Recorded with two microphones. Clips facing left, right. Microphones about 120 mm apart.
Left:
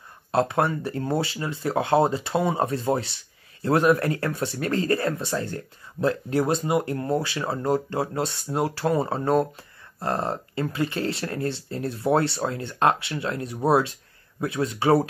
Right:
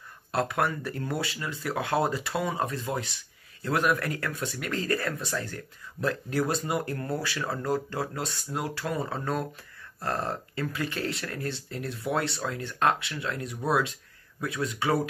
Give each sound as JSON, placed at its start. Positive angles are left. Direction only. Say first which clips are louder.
{"t": 0.3, "sound": "speech", "louder": "left 5 dB", "side_deg": 25}